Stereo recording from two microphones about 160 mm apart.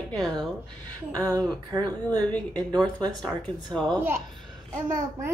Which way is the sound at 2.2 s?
10° left (ahead or behind).